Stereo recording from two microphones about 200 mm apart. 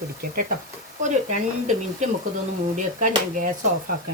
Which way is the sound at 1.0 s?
40° right (ahead or behind).